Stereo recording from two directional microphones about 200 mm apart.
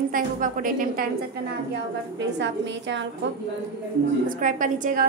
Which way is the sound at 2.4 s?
65° right (ahead or behind).